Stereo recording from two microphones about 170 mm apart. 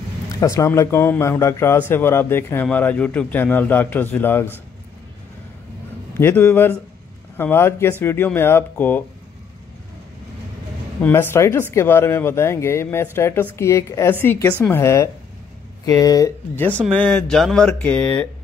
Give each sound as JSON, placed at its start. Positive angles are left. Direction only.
{"t": 0.3, "sound": "speech", "side_deg": 20}
{"t": 6.1, "sound": "speech", "side_deg": 10}
{"t": 11.0, "sound": "speech", "side_deg": 10}